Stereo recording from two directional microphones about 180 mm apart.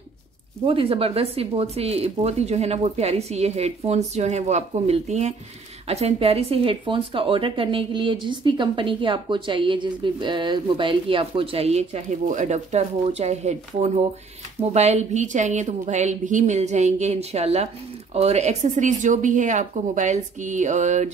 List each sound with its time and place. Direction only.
0.7 s speech: 30° right (ahead or behind)